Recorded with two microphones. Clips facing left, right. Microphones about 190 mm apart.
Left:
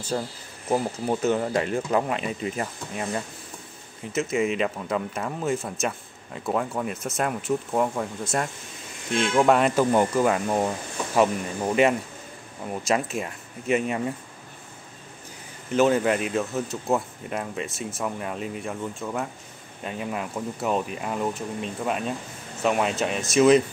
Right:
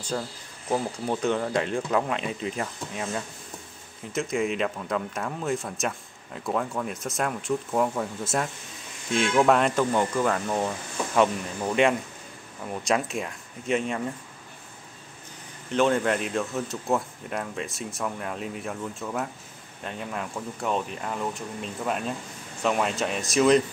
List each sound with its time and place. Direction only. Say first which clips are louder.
0.1 s speech: left 2 dB; 20° left (ahead or behind)
12.6 s speech: left 1 dB; centre (ahead or behind)
15.7 s speech: left 2 dB; 5° left (ahead or behind)